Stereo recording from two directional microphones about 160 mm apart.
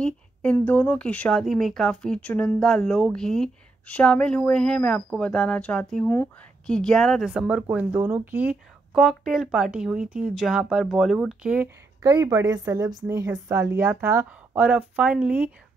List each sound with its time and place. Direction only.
0.0 s speech: 5° left (ahead or behind)
12.0 s speech: 20° right (ahead or behind)